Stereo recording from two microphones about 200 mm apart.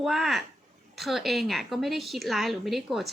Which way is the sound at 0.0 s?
Centre (ahead or behind).